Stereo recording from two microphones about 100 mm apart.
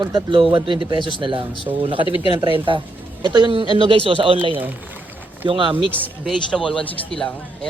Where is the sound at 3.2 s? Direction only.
50° right (ahead or behind).